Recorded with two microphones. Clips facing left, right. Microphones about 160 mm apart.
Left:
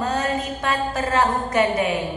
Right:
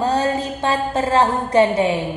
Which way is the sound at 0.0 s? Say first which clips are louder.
Right 4 dB; 30° right (ahead or behind).